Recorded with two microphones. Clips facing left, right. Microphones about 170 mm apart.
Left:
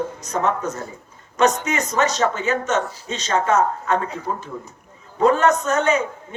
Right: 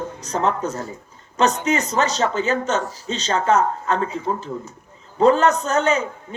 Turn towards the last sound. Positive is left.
turn(degrees=-30)  # may be behind; listen again after turning